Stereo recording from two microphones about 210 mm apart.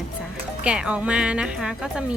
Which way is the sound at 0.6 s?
5° right (ahead or behind).